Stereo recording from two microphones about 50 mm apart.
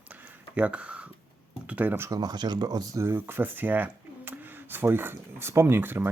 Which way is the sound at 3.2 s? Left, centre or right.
Right.